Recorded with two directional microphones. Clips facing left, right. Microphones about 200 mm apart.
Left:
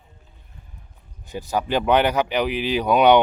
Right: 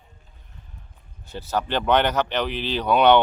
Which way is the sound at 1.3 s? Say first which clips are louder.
Left 2 dB; 15° left (ahead or behind).